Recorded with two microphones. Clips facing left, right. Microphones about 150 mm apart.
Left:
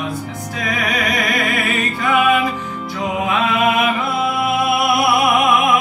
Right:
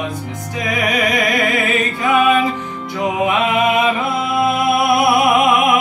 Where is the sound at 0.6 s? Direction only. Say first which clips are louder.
Right 3 dB; 15° right (ahead or behind).